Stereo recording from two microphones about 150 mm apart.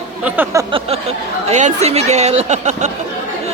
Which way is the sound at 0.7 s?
40° right (ahead or behind).